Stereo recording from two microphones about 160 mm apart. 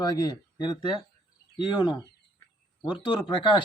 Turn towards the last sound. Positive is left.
turn(degrees=30)  # may be behind; listen again after turning